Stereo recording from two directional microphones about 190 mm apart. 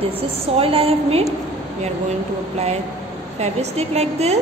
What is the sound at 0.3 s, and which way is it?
A woman's voice, 30° right (ahead or behind).